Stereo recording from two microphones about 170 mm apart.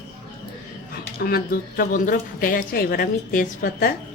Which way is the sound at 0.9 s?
65° left (ahead or behind).